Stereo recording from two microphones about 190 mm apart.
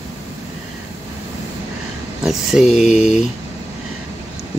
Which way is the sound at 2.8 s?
35° left (ahead or behind).